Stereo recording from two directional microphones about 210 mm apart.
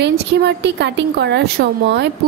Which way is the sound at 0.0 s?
55° right (ahead or behind).